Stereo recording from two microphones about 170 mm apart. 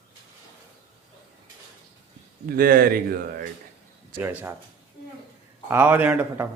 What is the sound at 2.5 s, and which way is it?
Speech, 60° right (ahead or behind).